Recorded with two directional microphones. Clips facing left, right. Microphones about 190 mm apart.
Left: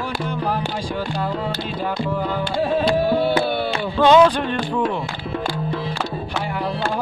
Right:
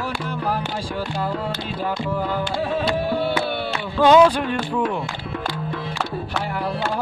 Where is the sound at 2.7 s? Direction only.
35° left (ahead or behind).